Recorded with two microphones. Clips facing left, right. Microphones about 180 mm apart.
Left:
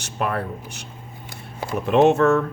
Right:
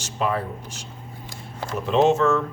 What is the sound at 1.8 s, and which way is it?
Speech, 60° left (ahead or behind).